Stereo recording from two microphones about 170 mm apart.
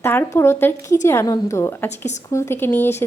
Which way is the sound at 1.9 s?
45° left (ahead or behind).